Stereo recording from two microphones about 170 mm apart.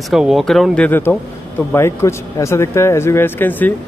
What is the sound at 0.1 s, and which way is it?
Speech, centre (ahead or behind).